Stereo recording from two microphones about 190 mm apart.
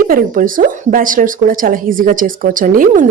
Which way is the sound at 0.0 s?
45° right (ahead or behind).